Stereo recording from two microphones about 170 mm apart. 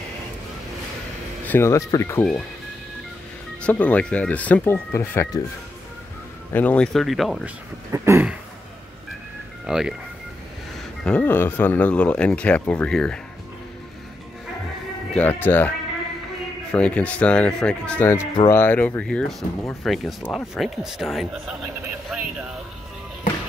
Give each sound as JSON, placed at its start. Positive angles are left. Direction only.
{"t": 1.4, "sound": "speech", "side_deg": 15}
{"t": 3.6, "sound": "speech", "side_deg": 10}
{"t": 6.5, "sound": "speech", "side_deg": 10}
{"t": 7.9, "sound": "a sound", "side_deg": -15}
{"t": 9.7, "sound": "speech", "side_deg": -5}
{"t": 11.1, "sound": "speech", "side_deg": 10}
{"t": 15.1, "sound": "speech", "side_deg": 10}
{"t": 16.7, "sound": "speech", "side_deg": 5}